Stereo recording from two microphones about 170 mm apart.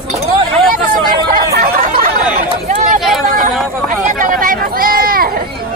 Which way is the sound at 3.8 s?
50° right (ahead or behind).